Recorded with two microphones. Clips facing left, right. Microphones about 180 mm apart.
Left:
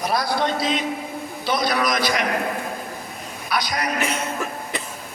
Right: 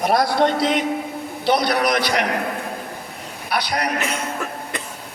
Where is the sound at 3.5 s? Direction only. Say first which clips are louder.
Right 2 dB; 65° right (ahead or behind).